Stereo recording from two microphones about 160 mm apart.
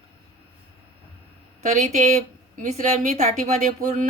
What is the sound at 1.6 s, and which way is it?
A woman's voice, 50° right (ahead or behind).